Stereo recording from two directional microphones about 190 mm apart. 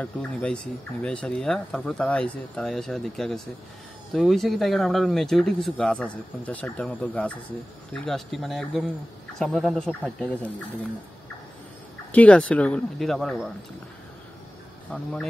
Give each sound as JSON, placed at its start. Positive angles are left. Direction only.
{"t": 0.0, "sound": "speech", "side_deg": 5}
{"t": 12.1, "sound": "speech", "side_deg": 5}